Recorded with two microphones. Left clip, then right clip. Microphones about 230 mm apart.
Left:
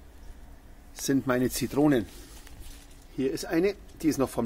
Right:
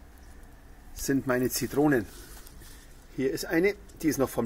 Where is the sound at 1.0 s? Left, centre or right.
Centre.